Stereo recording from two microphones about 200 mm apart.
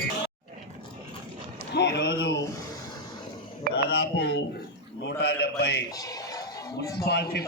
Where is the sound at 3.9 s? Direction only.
55° left (ahead or behind).